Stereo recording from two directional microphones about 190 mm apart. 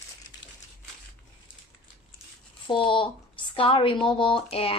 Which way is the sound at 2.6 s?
25° left (ahead or behind).